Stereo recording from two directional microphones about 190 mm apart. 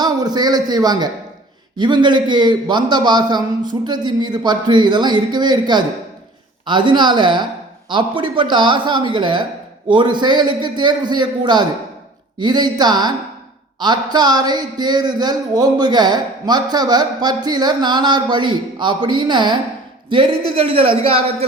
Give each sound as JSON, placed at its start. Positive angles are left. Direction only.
{"t": 0.0, "sound": "speech", "side_deg": -20}